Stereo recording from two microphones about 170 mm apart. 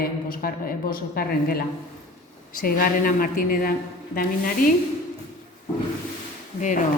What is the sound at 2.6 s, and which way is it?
A woman's voice, 55° left (ahead or behind).